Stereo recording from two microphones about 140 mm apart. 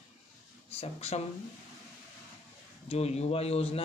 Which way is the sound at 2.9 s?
50° left (ahead or behind).